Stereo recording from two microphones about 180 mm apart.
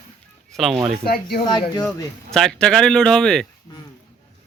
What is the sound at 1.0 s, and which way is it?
Speech, 55° left (ahead or behind).